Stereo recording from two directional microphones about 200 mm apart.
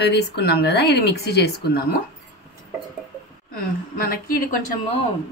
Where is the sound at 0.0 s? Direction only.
55° left (ahead or behind).